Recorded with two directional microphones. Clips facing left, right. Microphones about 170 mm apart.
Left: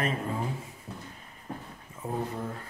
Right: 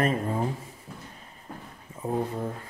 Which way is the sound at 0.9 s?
25° left (ahead or behind).